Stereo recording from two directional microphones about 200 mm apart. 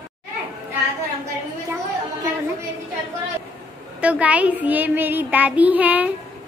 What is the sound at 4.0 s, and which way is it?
A child's voice, 5° right (ahead or behind).